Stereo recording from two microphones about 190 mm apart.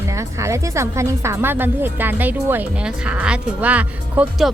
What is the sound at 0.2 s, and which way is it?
A woman's voice, 15° right (ahead or behind).